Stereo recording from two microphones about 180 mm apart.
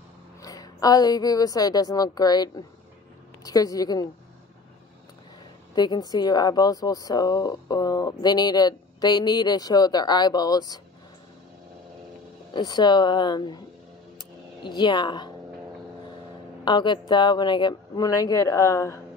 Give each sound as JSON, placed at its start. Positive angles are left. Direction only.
{"t": 0.4, "sound": "a woman's voice", "side_deg": 20}
{"t": 5.8, "sound": "speech", "side_deg": 25}
{"t": 12.5, "sound": "speech", "side_deg": 25}
{"t": 14.6, "sound": "speech", "side_deg": 25}
{"t": 16.6, "sound": "speech", "side_deg": 25}